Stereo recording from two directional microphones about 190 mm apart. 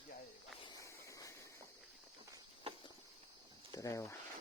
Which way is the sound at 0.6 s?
20° left (ahead or behind).